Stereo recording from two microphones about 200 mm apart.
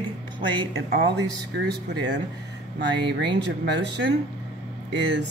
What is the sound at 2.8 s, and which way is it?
Speech, 60° right (ahead or behind).